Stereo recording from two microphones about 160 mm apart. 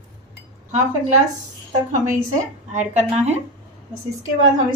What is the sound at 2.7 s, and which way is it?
Speech, 45° right (ahead or behind).